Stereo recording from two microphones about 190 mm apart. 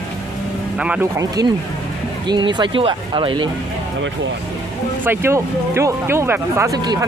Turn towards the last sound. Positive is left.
turn(degrees=-20)  # may be behind; listen again after turning